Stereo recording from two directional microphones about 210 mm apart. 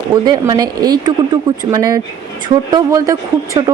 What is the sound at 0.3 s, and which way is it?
Speech, 20° right (ahead or behind).